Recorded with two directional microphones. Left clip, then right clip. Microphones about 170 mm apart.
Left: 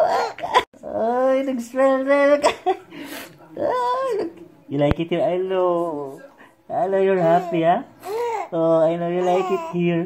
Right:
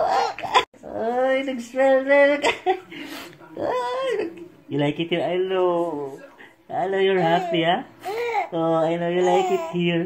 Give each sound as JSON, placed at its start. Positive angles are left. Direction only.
{"t": 0.0, "sound": "a sound", "side_deg": 30}
{"t": 3.0, "sound": "dog", "side_deg": 30}
{"t": 6.7, "sound": "speech", "side_deg": 20}